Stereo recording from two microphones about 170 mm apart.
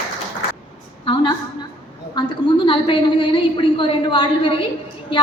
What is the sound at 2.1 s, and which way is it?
A woman's voice, 25° left (ahead or behind).